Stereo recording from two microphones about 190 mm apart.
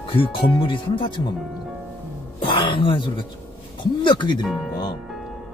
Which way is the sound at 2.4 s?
25° left (ahead or behind).